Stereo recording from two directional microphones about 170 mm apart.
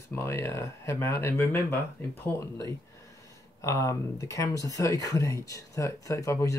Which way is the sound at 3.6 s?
20° left (ahead or behind).